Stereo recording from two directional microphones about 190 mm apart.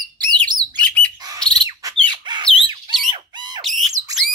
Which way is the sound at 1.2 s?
20° right (ahead or behind).